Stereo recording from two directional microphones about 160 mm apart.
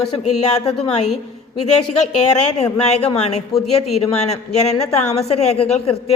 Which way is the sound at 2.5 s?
40° left (ahead or behind).